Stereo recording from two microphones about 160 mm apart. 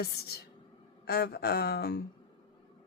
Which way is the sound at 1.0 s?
85° left.